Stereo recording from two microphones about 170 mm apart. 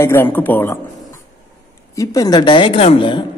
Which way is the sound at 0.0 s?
15° left (ahead or behind).